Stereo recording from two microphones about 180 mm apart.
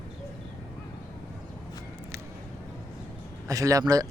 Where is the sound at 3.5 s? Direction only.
20° right (ahead or behind).